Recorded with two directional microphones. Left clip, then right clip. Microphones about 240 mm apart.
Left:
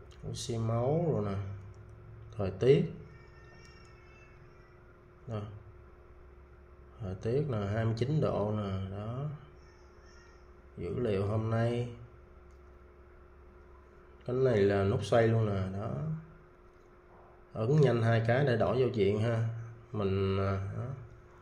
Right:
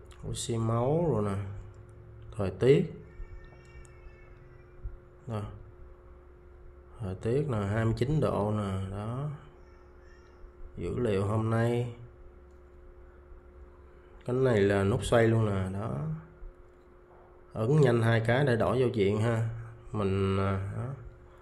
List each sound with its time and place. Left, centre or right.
0.2 s speech: centre
7.0 s speech: centre
10.8 s speech: centre
14.2 s speech: centre
17.5 s speech: centre